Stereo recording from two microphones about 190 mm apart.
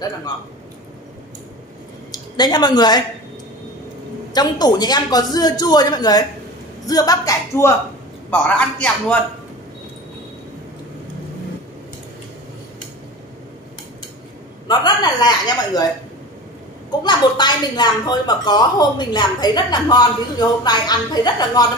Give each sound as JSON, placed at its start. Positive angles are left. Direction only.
{"t": 2.3, "sound": "a woman's voice", "side_deg": 20}
{"t": 4.3, "sound": "a woman's voice", "side_deg": 20}
{"t": 14.7, "sound": "a woman's voice", "side_deg": 20}
{"t": 17.0, "sound": "a woman's voice", "side_deg": 25}